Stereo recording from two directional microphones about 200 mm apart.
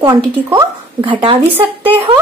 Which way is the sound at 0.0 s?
20° right (ahead or behind).